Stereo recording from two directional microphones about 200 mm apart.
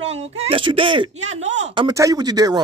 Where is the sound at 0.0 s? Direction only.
30° right (ahead or behind).